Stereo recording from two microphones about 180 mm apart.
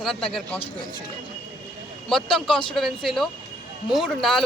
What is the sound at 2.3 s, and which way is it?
Speech, 30° left (ahead or behind).